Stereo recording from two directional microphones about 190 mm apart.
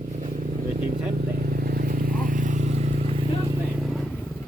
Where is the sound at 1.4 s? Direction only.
50° right (ahead or behind).